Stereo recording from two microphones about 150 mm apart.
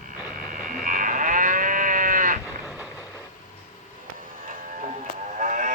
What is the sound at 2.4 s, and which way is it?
Sheep, 10° right (ahead or behind).